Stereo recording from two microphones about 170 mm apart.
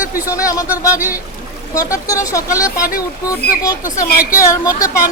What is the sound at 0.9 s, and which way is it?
Speech, 10° right (ahead or behind).